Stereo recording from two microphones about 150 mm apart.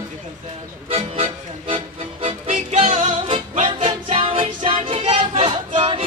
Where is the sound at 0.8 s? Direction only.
40° right (ahead or behind).